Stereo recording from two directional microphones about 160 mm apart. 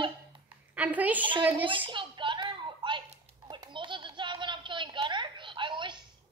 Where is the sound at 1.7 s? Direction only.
30° right (ahead or behind).